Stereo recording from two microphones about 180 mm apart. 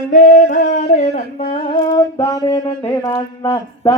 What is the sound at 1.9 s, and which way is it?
Speech, 20° left (ahead or behind).